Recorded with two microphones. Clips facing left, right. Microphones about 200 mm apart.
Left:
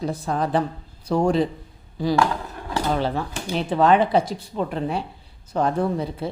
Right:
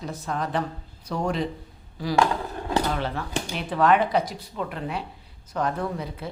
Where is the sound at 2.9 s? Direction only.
30° left (ahead or behind).